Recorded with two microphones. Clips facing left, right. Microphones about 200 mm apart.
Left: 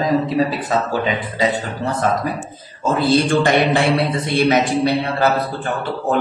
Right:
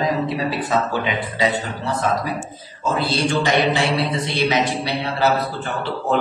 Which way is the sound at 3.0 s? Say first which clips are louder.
Left 6 dB; 50° left (ahead or behind).